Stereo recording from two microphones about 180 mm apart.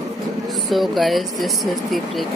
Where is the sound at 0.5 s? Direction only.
Centre (ahead or behind).